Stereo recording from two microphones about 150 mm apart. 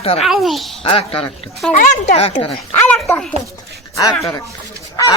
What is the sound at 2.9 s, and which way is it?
Speech, 5° left (ahead or behind).